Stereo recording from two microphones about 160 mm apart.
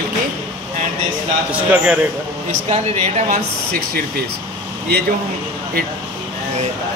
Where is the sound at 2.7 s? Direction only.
50° right (ahead or behind).